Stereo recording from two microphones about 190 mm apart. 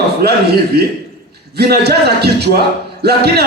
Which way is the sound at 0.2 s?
55° right (ahead or behind).